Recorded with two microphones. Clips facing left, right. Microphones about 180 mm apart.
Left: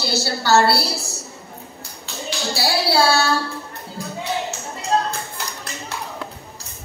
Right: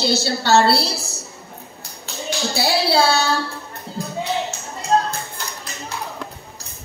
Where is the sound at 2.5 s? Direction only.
20° right (ahead or behind).